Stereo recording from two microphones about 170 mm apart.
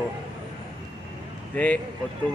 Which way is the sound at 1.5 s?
10° left (ahead or behind).